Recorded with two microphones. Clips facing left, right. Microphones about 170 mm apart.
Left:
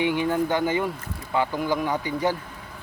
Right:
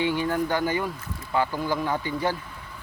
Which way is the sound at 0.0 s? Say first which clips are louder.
Left 2 dB; 20° left (ahead or behind).